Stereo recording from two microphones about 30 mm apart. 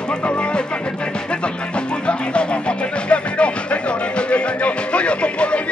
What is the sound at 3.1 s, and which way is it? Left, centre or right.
Music, left.